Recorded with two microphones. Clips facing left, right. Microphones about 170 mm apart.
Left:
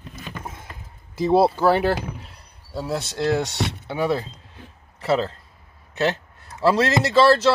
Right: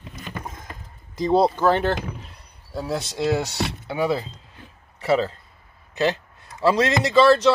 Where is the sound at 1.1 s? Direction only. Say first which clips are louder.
Left 1 dB; 5° left (ahead or behind).